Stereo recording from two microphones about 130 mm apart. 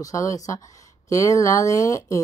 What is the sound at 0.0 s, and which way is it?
Speech, 25° left (ahead or behind).